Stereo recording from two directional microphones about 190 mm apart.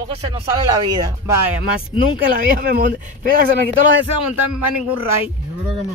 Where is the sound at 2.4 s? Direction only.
50° right (ahead or behind).